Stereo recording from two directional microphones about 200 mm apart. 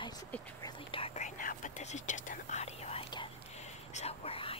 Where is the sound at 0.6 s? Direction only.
25° left (ahead or behind).